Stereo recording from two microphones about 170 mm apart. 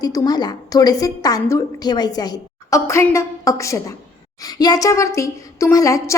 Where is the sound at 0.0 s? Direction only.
20° left (ahead or behind).